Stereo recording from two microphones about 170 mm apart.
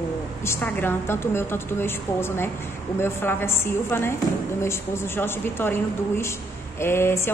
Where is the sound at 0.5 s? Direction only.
10° left (ahead or behind).